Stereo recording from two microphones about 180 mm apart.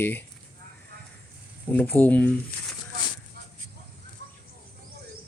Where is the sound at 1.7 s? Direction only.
10° left (ahead or behind).